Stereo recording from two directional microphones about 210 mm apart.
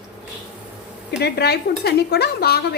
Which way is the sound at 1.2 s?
50° left (ahead or behind).